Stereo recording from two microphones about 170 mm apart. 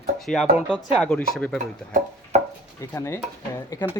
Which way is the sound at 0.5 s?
5° right (ahead or behind).